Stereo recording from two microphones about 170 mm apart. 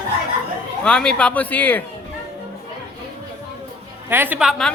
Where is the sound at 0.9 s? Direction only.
5° left (ahead or behind).